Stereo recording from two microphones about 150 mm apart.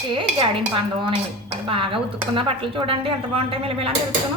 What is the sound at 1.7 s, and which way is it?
Speech, 35° right (ahead or behind).